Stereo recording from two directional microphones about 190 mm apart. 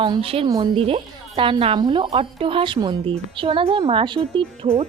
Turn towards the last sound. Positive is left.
turn(degrees=-30)  # may be behind; listen again after turning